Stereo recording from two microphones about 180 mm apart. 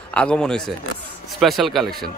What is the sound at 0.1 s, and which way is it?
Speech, 5° left (ahead or behind).